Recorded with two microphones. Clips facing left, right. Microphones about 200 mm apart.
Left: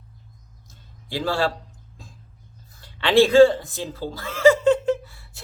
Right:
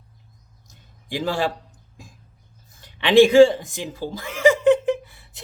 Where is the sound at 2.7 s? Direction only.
15° right (ahead or behind).